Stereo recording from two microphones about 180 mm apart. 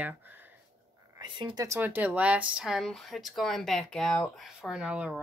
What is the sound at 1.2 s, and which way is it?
Speech, 25° right (ahead or behind).